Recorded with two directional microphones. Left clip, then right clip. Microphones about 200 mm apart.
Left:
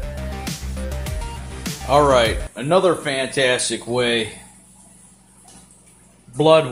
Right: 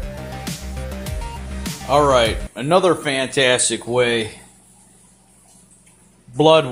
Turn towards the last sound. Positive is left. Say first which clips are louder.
# right 1 dB
turn(degrees=-25)  # may be behind; listen again after turning